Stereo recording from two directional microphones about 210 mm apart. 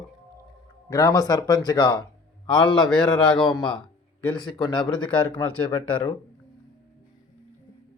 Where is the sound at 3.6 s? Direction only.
20° left (ahead or behind).